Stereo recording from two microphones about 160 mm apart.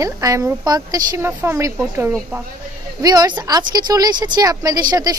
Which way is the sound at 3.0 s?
25° right (ahead or behind).